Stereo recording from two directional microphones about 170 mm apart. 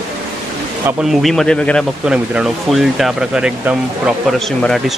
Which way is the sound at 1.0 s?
Centre (ahead or behind).